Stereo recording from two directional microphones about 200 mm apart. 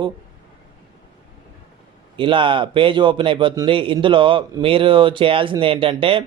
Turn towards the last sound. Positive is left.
turn(degrees=-25)  # may be behind; listen again after turning